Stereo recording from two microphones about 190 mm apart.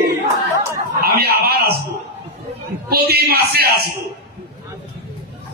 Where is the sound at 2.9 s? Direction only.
55° right (ahead or behind).